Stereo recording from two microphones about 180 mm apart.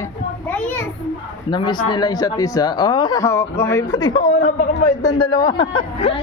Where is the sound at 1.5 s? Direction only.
25° left (ahead or behind).